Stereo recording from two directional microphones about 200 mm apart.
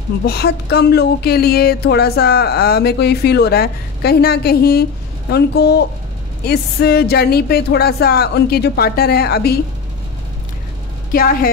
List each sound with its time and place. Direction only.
0.2 s a woman's voice: 55° left (ahead or behind)
11.1 s a woman's voice: 45° left (ahead or behind)